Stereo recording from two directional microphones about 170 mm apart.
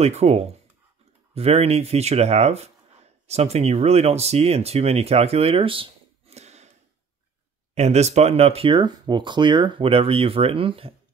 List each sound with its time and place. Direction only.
0.0 s speech: 40° right (ahead or behind)
7.7 s speech: 40° right (ahead or behind)